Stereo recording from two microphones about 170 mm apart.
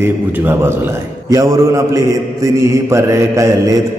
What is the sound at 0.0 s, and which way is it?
A man's voice, 10° right (ahead or behind).